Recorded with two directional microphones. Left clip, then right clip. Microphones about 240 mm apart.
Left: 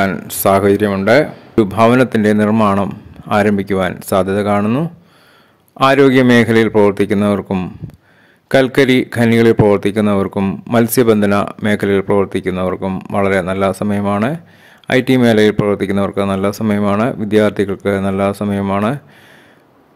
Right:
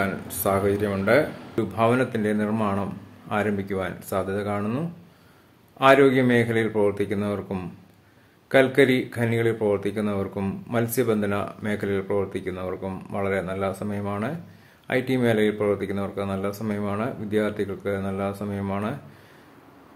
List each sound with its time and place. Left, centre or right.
0.0 s speech: left